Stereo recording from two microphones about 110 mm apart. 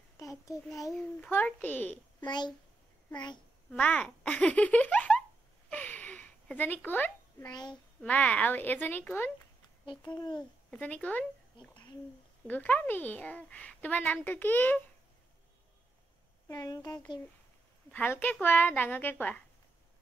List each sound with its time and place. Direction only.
0.2 s a child's voice: 30° left (ahead or behind)
1.3 s a child's voice: 15° left (ahead or behind)
2.1 s a child's voice: 40° left (ahead or behind)
3.7 s a child's voice: 15° left (ahead or behind)
5.7 s a sound: 15° left (ahead or behind)
7.4 s speech: 40° left (ahead or behind)
8.0 s a child's voice: 10° left (ahead or behind)
9.8 s a child's voice: 40° left (ahead or behind)
10.7 s a child's voice: 10° left (ahead or behind)
12.4 s a child's voice: 15° left (ahead or behind)
16.4 s speech: 35° left (ahead or behind)
17.9 s a child's voice: 15° left (ahead or behind)